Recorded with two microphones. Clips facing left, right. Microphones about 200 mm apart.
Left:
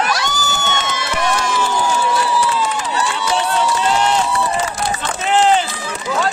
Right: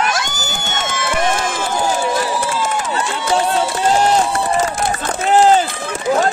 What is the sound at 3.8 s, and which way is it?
Run, 45° right (ahead or behind).